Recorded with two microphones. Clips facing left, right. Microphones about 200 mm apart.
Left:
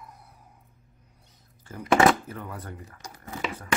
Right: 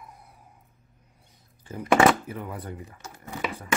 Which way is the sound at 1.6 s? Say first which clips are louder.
Right 1 dB; 15° right (ahead or behind).